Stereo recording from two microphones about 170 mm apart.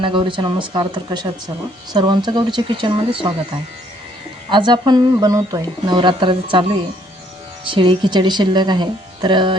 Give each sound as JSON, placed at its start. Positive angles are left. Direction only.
{"t": 0.0, "sound": "speech", "side_deg": -30}
{"t": 4.4, "sound": "speech", "side_deg": -25}